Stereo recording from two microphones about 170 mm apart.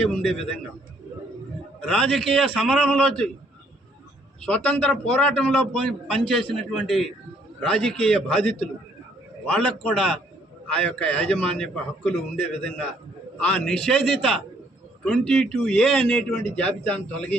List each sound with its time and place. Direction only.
0.0 s a man's voice: 5° left (ahead or behind)
1.8 s a man's voice: 5° left (ahead or behind)
4.4 s a man's voice: 5° left (ahead or behind)